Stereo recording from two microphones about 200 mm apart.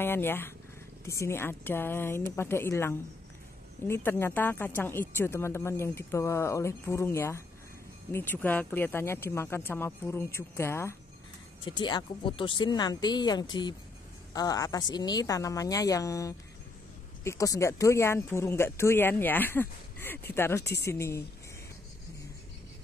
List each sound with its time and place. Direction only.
0.0 s speech: 10° left (ahead or behind)
20.6 s a woman's voice: 55° left (ahead or behind)
20.9 s speech: 15° left (ahead or behind)